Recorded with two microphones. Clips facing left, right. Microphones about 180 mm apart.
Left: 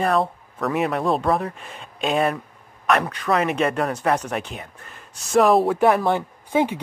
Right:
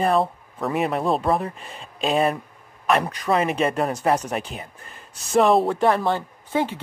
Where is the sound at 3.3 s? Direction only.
20° right (ahead or behind).